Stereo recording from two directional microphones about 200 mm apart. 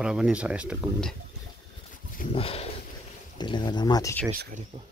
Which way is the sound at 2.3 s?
30° left (ahead or behind).